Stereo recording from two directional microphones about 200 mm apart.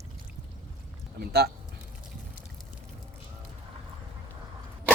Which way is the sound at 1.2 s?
55° right (ahead or behind).